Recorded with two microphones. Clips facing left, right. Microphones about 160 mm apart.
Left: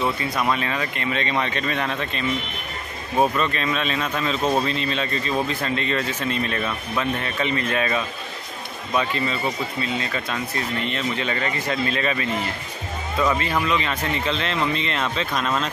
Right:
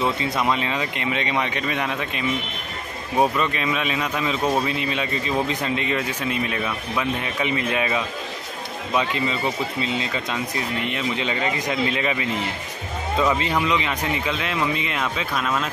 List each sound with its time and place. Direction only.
0.2 s speech: 20° right (ahead or behind)